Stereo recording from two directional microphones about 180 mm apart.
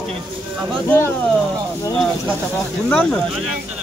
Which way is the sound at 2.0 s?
Centre (ahead or behind).